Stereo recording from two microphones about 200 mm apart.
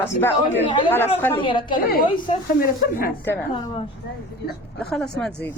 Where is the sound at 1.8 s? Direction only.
50° left (ahead or behind).